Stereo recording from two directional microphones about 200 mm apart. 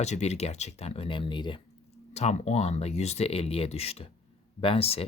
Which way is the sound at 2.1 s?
35° left (ahead or behind).